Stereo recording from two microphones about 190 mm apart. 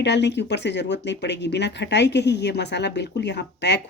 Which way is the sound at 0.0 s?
65° left (ahead or behind).